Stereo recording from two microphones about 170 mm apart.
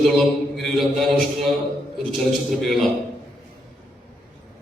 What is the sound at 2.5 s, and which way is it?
Speech, centre (ahead or behind).